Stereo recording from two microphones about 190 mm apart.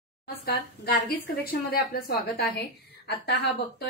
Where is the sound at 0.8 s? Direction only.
55° left (ahead or behind).